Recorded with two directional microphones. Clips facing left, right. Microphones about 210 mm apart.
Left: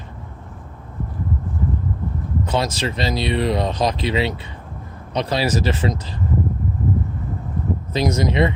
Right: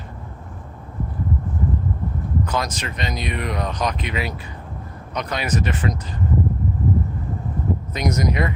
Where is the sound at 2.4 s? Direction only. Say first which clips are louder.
Left 4 dB; 25° left (ahead or behind).